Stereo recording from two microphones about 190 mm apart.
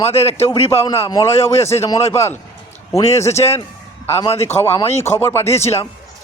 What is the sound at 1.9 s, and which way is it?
Speech, 35° left (ahead or behind).